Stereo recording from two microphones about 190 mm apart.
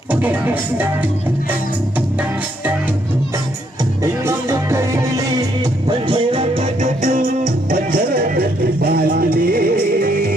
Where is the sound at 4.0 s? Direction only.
15° right (ahead or behind).